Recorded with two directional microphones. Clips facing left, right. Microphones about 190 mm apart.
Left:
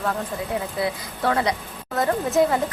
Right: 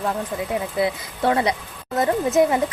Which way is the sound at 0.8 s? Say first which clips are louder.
Right 3 dB; 20° right (ahead or behind).